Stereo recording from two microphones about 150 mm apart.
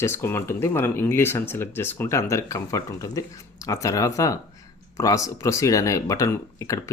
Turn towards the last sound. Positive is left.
turn(degrees=20)  # may be behind; listen again after turning